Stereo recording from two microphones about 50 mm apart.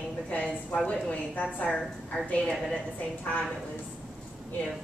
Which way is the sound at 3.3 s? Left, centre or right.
Left.